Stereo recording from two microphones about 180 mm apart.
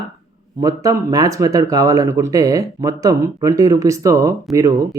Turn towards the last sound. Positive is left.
turn(degrees=-15)  # may be behind; listen again after turning